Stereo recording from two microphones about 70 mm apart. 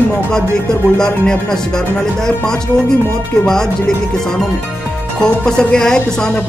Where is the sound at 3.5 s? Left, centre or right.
Centre.